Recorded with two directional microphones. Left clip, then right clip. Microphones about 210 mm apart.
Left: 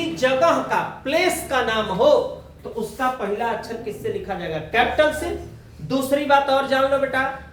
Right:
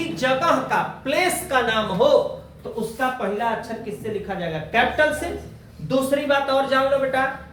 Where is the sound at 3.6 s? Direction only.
15° left (ahead or behind).